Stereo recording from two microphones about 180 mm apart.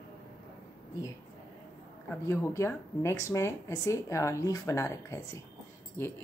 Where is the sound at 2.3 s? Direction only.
15° left (ahead or behind).